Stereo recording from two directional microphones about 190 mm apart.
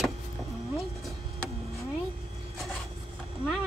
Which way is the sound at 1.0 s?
Centre (ahead or behind).